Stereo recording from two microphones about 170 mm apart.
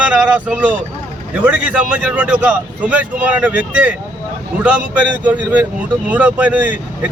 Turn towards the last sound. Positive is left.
turn(degrees=-10)  # may be behind; listen again after turning